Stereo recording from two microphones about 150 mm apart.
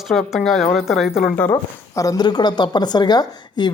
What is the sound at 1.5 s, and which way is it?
Speech, 25° left (ahead or behind).